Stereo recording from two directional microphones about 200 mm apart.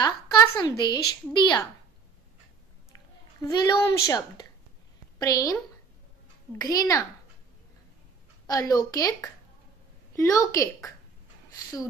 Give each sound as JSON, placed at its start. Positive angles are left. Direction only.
{"t": 0.0, "sound": "a woman's voice", "side_deg": 20}
{"t": 3.4, "sound": "a woman's voice", "side_deg": 15}
{"t": 6.6, "sound": "a woman's voice", "side_deg": 20}
{"t": 8.5, "sound": "a woman's voice", "side_deg": 20}